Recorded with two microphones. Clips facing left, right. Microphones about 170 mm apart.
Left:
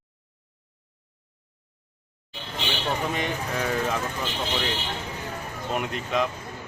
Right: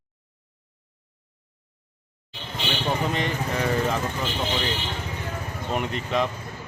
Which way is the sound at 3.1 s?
5° left (ahead or behind).